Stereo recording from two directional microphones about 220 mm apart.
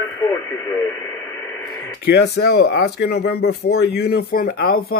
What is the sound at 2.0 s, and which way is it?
Speech, 50° left (ahead or behind).